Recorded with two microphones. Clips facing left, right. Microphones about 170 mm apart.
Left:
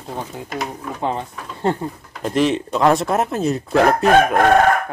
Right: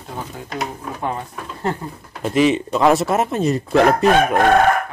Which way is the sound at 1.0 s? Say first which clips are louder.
Left 2 dB; 25° left (ahead or behind).